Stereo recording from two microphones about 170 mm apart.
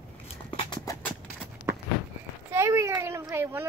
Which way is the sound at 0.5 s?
25° left (ahead or behind).